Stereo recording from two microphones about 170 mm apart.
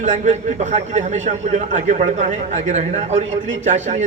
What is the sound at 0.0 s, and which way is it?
A man's voice, 45° right (ahead or behind).